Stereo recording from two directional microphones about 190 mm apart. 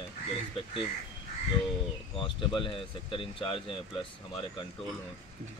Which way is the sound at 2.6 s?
30° left (ahead or behind).